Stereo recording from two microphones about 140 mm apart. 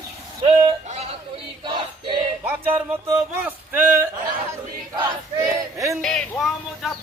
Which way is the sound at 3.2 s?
10° right (ahead or behind).